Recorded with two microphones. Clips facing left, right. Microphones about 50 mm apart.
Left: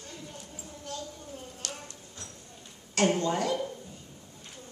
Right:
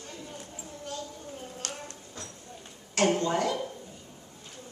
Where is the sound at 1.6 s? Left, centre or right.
Right.